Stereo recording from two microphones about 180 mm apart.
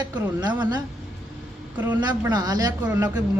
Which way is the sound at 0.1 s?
25° right (ahead or behind).